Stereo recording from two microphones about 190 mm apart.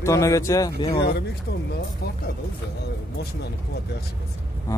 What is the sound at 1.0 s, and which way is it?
Speech, 60° left (ahead or behind).